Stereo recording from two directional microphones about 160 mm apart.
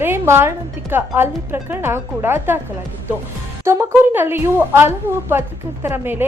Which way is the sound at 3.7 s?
15° right (ahead or behind).